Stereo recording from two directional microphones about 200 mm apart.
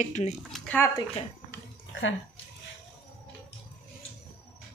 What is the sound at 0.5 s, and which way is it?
Speech, 10° left (ahead or behind).